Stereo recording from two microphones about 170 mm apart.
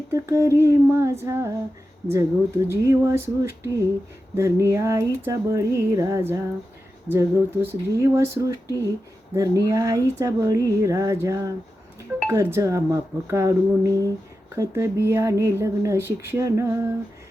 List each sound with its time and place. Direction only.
0.1 s speech: 15° right (ahead or behind)
8.6 s speech: 15° left (ahead or behind)
9.3 s speech: 20° right (ahead or behind)